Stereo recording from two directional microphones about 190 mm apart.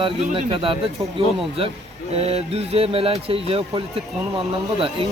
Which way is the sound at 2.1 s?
30° right (ahead or behind).